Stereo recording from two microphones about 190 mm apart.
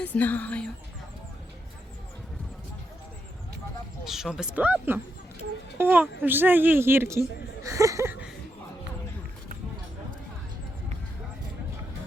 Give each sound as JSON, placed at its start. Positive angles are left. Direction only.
{"t": 0.0, "sound": "speech", "side_deg": 10}
{"t": 4.0, "sound": "speech", "side_deg": 0}
{"t": 7.6, "sound": "a sound", "side_deg": -15}